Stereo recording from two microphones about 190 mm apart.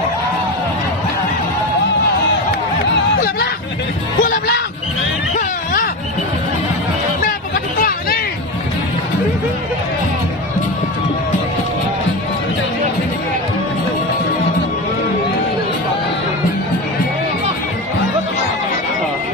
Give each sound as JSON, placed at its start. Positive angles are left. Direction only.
{"t": 3.2, "sound": "hubbub", "side_deg": 55}
{"t": 4.2, "sound": "music", "side_deg": 45}
{"t": 7.8, "sound": "hubbub", "side_deg": 50}